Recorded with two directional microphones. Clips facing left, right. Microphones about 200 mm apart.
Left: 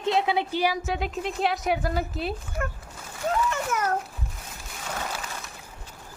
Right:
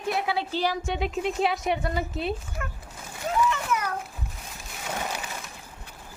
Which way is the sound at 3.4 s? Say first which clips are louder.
Left 1 dB; 45° left (ahead or behind).